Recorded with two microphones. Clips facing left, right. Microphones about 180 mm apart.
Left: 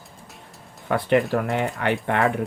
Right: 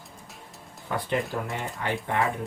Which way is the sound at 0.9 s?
65° left (ahead or behind).